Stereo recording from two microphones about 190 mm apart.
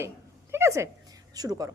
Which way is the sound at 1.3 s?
20° right (ahead or behind).